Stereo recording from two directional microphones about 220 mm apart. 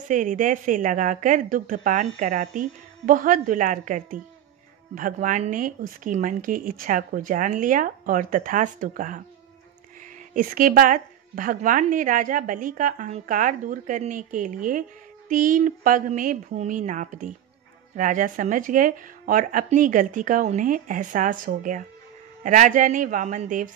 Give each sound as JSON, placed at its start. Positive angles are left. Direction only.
{"t": 0.1, "sound": "a woman's voice", "side_deg": -35}
{"t": 10.3, "sound": "a woman's voice", "side_deg": -40}